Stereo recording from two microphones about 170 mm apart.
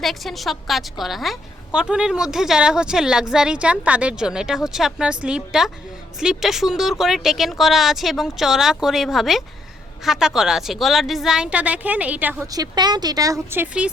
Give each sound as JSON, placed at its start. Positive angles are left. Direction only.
{"t": 0.0, "sound": "a woman's voice", "side_deg": 0}
{"t": 12.5, "sound": "speech", "side_deg": -25}